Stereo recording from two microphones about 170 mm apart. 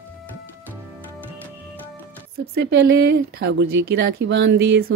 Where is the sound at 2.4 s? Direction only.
70° right (ahead or behind).